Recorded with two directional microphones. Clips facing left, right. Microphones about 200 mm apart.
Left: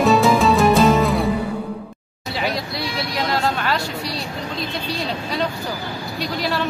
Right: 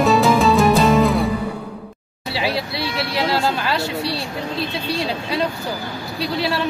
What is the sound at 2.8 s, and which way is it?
Vehicle, 30° right (ahead or behind).